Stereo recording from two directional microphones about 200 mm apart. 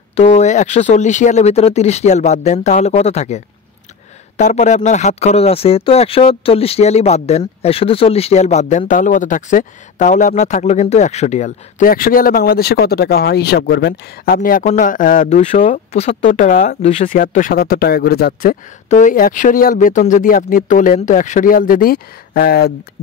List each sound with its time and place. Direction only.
0.1 s speech: 35° left (ahead or behind); by 22.7 s 50° left (ahead or behind)